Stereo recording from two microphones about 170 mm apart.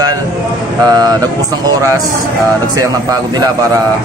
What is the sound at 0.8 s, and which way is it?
Speech, 25° right (ahead or behind).